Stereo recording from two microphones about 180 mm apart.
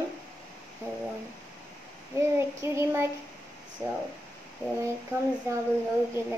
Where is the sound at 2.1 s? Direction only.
15° right (ahead or behind).